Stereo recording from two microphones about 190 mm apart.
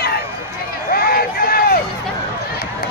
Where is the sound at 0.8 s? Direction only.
50° left (ahead or behind).